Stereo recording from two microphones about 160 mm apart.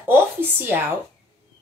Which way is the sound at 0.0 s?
10° right (ahead or behind).